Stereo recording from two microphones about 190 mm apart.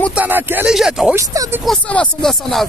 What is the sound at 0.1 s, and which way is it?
Speech, 10° right (ahead or behind).